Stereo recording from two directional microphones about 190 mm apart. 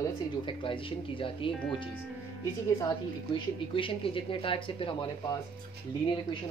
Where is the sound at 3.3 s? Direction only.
25° left (ahead or behind).